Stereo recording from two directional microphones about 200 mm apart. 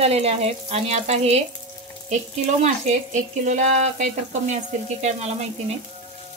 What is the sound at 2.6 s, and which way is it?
Speech, 35° right (ahead or behind).